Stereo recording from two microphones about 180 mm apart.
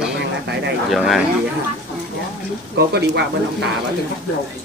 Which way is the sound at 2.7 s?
60° right (ahead or behind).